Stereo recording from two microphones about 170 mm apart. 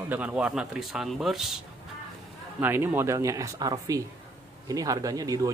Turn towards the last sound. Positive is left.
turn(degrees=-20)  # may be behind; listen again after turning